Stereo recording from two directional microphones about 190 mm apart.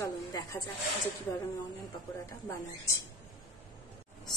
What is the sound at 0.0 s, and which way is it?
Snake, 15° left (ahead or behind).